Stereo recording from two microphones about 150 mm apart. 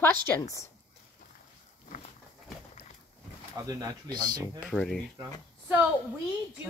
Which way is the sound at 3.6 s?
25° right (ahead or behind).